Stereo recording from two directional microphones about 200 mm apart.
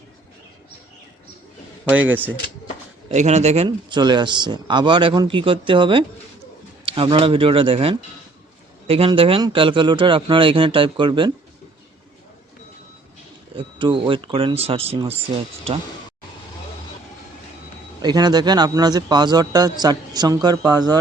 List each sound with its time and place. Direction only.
1.8 s speech: 5° right (ahead or behind)
3.1 s a man's voice: 35° right (ahead or behind)
13.6 s a man's voice: 25° right (ahead or behind)
18.0 s a man's voice: 20° right (ahead or behind)